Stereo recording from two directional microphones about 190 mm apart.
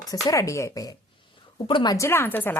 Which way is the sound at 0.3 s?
15° left (ahead or behind).